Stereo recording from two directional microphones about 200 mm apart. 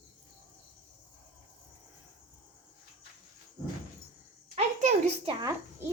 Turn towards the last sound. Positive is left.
turn(degrees=-35)  # may be behind; listen again after turning